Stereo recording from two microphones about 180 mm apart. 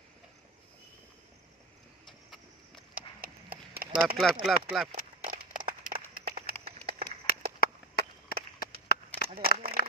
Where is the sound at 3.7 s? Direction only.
55° right (ahead or behind).